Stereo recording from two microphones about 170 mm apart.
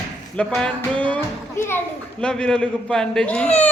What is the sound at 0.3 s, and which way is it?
A child's voice, 5° left (ahead or behind).